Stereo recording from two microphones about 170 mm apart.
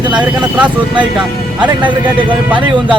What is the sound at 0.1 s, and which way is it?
Speech, 5° right (ahead or behind).